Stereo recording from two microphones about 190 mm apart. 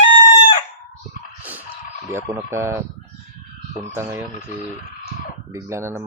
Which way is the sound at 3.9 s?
10° right (ahead or behind).